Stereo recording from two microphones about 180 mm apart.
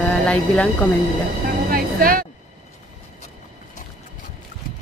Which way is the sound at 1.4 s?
50° right (ahead or behind).